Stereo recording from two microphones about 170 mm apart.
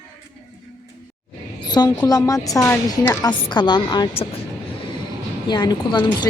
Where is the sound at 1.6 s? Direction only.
25° left (ahead or behind).